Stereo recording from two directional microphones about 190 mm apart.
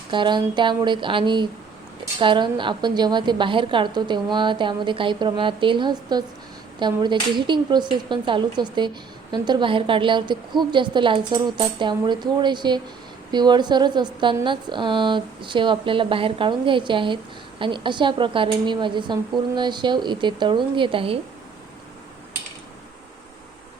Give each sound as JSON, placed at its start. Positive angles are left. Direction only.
{"t": 0.1, "sound": "a woman's voice", "side_deg": -25}